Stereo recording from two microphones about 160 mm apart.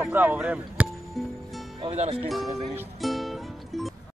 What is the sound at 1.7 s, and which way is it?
Speech, 40° right (ahead or behind).